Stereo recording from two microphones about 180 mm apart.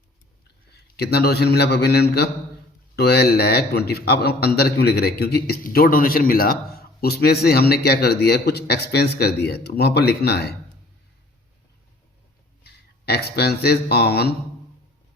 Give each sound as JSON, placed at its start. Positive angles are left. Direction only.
{"t": 0.7, "sound": "a man's voice", "side_deg": 65}
{"t": 12.6, "sound": "speech", "side_deg": 60}